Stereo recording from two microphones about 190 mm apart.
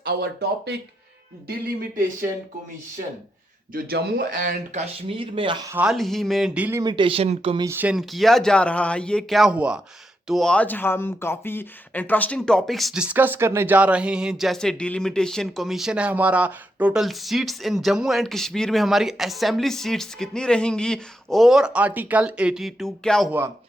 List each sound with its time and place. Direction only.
0.0 s speech: 55° right (ahead or behind)
3.7 s speech: 50° right (ahead or behind)
5.0 s speech: 30° right (ahead or behind)
5.7 s speech: 5° right (ahead or behind); by 7.6 s 30° right (ahead or behind)
7.6 s speech: 10° right (ahead or behind)